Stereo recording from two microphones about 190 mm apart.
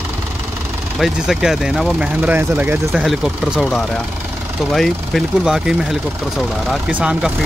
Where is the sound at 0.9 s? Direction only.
Centre (ahead or behind).